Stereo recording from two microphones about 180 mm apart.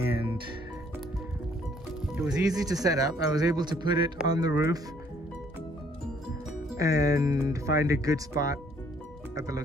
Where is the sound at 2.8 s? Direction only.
20° right (ahead or behind).